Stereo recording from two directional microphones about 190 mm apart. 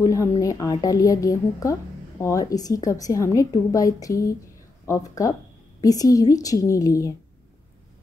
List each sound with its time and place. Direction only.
0.0 s a woman's voice: 15° left (ahead or behind)